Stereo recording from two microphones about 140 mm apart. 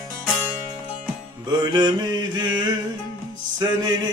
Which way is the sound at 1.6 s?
30° right (ahead or behind).